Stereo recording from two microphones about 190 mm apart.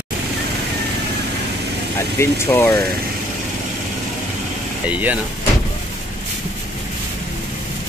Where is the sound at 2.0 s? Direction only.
15° left (ahead or behind).